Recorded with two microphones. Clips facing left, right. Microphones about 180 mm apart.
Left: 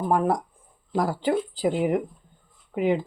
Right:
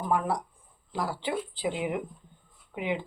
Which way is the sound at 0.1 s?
45° left (ahead or behind).